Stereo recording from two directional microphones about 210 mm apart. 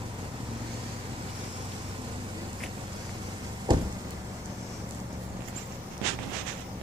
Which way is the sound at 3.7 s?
20° right (ahead or behind).